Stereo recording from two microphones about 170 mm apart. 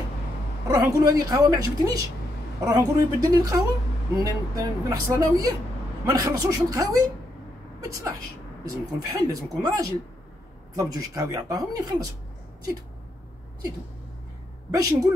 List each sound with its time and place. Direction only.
0.7 s a woman's voice: 20° right (ahead or behind)
8.6 s a woman's voice: 20° right (ahead or behind)
14.7 s a woman's voice: 20° right (ahead or behind)